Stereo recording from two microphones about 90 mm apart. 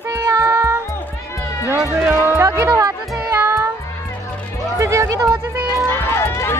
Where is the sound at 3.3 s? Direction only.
25° right (ahead or behind).